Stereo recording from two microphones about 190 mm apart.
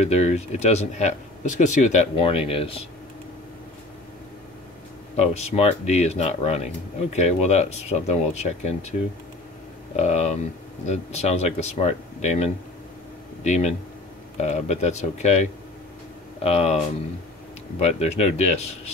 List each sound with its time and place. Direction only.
0.0 s speech: 35° left (ahead or behind)
5.1 s speech: 35° left (ahead or behind)
9.9 s speech: 35° left (ahead or behind)
16.4 s speech: 30° left (ahead or behind)